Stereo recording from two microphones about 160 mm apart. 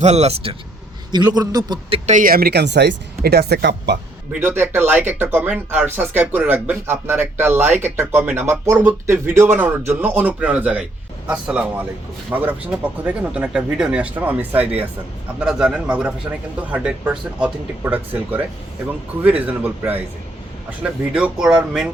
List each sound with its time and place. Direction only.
0.0 s speech: 45° right (ahead or behind)
1.1 s a man's voice: 25° right (ahead or behind)
2.0 s speech: 55° right (ahead or behind); by 3.9 s 90° right
4.3 s speech: 10° right (ahead or behind)